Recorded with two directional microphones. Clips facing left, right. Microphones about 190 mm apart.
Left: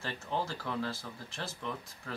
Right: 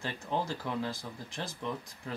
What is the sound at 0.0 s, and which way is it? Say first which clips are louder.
Speech: right 2 dB; 15° right (ahead or behind).